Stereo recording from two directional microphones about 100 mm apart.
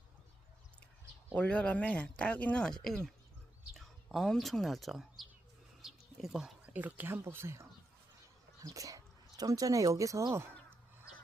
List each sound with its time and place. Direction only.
1.3 s speech: 15° left (ahead or behind)
5.8 s bird: 5° right (ahead or behind)
6.7 s speech: 20° right (ahead or behind)